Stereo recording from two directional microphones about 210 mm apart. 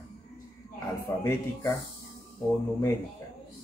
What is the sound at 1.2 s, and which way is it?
Speech, 15° left (ahead or behind).